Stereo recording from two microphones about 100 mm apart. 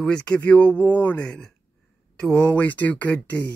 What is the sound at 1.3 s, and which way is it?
Speech, 5° left (ahead or behind).